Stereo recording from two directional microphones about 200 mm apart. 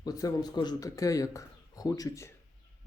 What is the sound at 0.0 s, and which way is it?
Speech, 20° left (ahead or behind).